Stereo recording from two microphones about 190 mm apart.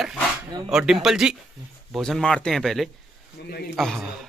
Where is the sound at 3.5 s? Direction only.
55° left (ahead or behind).